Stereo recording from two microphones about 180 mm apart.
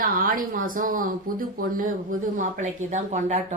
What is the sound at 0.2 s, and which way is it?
Speech, 50° right (ahead or behind).